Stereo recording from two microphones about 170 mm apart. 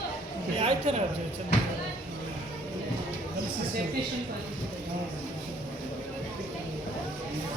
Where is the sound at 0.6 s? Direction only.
40° right (ahead or behind).